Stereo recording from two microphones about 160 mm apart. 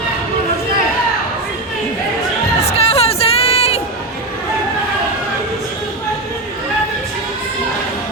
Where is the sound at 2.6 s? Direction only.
40° left (ahead or behind).